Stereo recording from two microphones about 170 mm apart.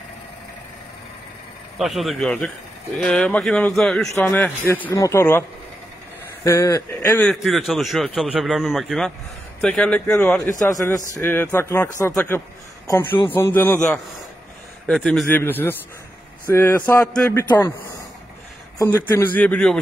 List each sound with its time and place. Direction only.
1.8 s a man's voice: centre (ahead or behind)
6.4 s a man's voice: 20° left (ahead or behind)
7.2 s a man's voice: centre (ahead or behind)
15.0 s a man's voice: 10° left (ahead or behind)
19.1 s a man's voice: 10° left (ahead or behind)